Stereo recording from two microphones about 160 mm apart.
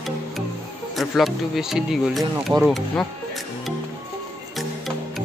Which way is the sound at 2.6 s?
Centre (ahead or behind).